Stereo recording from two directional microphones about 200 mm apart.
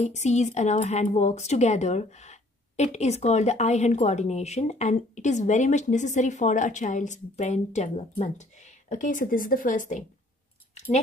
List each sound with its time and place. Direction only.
0.0 s speech: 35° left (ahead or behind)